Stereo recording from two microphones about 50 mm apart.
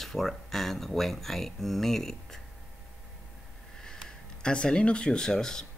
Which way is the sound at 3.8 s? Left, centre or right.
Centre.